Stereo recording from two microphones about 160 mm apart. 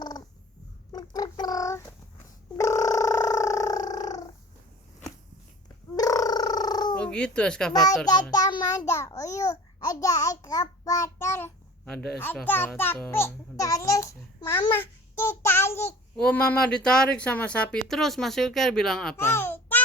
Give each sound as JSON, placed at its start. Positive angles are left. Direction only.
{"t": 0.9, "sound": "a sound", "side_deg": 25}
{"t": 2.6, "sound": "purr", "side_deg": 20}
{"t": 6.0, "sound": "a sound", "side_deg": 20}
{"t": 7.0, "sound": "speech", "side_deg": 5}
{"t": 8.0, "sound": "a child's voice", "side_deg": 25}
{"t": 11.9, "sound": "a child's voice", "side_deg": 5}
{"t": 14.7, "sound": "child singing", "side_deg": 15}
{"t": 16.2, "sound": "speech", "side_deg": 10}
{"t": 19.1, "sound": "babbling", "side_deg": 15}